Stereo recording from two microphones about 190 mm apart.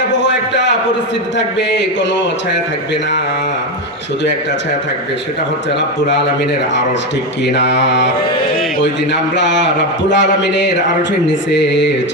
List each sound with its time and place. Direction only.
7.4 s mantra: 65° left (ahead or behind)
10.1 s speech: 70° left (ahead or behind)